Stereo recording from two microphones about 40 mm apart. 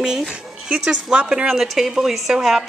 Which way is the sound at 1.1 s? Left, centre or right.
Right.